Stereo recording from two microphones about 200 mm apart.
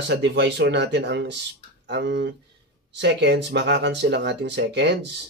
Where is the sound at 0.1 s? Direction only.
60° right (ahead or behind).